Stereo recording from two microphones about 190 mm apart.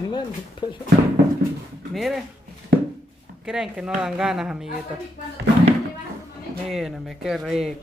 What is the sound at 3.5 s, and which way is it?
Speech, 5° right (ahead or behind).